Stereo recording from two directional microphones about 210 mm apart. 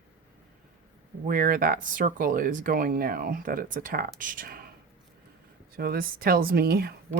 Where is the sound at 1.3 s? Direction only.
40° right (ahead or behind).